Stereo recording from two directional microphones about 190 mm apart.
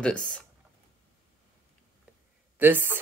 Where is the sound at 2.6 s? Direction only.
10° right (ahead or behind).